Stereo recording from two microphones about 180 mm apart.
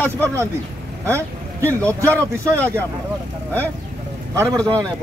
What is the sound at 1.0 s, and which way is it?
Speech, 15° right (ahead or behind).